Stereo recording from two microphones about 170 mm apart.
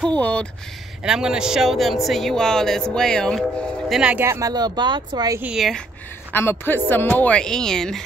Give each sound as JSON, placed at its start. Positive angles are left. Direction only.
{"t": 0.2, "sound": "a man's voice", "side_deg": 5}
{"t": 1.0, "sound": "speech", "side_deg": -5}
{"t": 3.9, "sound": "speech", "side_deg": -5}
{"t": 5.4, "sound": "speech", "side_deg": 0}
{"t": 6.3, "sound": "a man's voice", "side_deg": 15}